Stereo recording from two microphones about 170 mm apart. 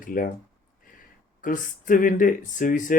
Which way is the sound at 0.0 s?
55° left (ahead or behind).